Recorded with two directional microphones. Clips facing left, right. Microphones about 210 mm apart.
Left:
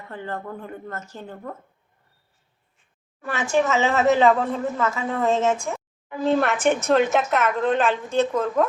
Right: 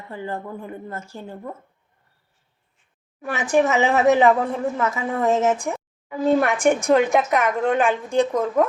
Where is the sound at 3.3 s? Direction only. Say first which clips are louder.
Right 2 dB; 15° right (ahead or behind).